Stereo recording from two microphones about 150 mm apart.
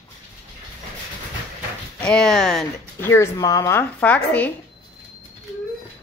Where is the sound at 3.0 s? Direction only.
15° left (ahead or behind).